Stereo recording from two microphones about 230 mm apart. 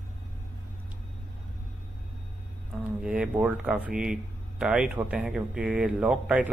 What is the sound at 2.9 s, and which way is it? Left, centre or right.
Speech, centre.